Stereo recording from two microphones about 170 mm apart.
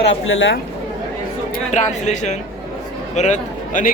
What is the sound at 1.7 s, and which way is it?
A man's voice, 45° left (ahead or behind).